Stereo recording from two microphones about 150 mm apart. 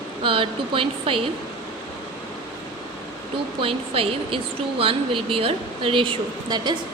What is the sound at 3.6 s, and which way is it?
Speech, 40° right (ahead or behind).